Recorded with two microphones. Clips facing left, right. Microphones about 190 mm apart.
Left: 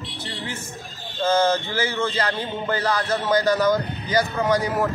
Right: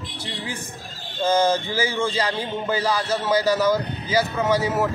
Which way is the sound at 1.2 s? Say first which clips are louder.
Even; 15° right (ahead or behind).